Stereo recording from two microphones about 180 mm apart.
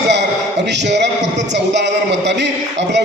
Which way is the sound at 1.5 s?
75° right (ahead or behind).